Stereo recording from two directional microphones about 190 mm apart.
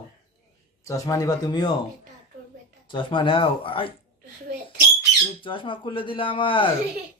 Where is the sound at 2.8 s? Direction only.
25° left (ahead or behind).